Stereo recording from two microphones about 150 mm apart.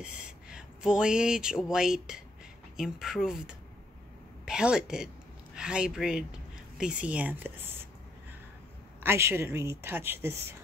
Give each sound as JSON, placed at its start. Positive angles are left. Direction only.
{"t": 0.0, "sound": "speech", "side_deg": -5}
{"t": 9.0, "sound": "speech", "side_deg": -15}